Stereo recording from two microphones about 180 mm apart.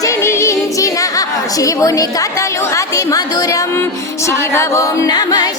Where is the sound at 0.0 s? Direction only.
15° left (ahead or behind).